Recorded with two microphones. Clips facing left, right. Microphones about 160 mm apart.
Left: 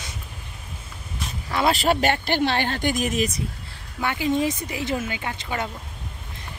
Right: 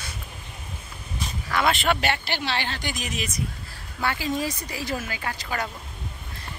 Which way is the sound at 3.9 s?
20° left (ahead or behind).